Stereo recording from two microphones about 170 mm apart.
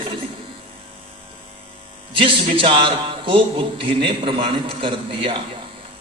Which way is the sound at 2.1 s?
30° right (ahead or behind).